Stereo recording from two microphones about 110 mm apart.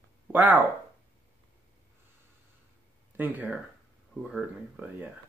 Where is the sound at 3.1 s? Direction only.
15° right (ahead or behind).